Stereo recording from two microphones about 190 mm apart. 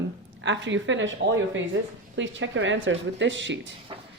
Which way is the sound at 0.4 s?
75° right (ahead or behind).